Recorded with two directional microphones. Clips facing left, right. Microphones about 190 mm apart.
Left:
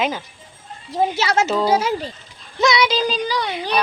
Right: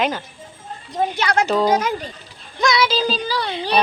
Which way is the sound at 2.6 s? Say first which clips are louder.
Left 1 dB; 20° left (ahead or behind).